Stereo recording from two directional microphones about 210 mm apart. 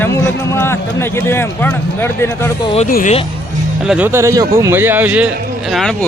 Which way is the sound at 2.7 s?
35° left (ahead or behind).